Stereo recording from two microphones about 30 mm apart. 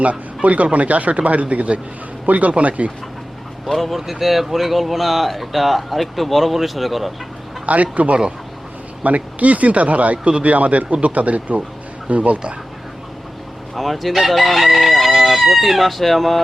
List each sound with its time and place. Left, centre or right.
0.4 s speech: right
3.7 s speech: centre
7.7 s speech: right
13.7 s speech: centre